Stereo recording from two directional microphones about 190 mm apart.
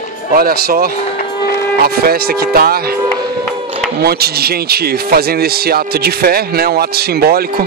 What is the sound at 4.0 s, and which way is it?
Speech, 55° right (ahead or behind).